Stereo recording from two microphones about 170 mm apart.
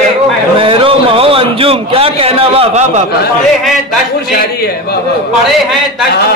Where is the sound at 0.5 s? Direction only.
30° right (ahead or behind).